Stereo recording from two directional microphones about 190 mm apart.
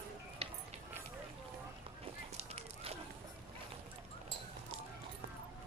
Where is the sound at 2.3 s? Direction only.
35° right (ahead or behind).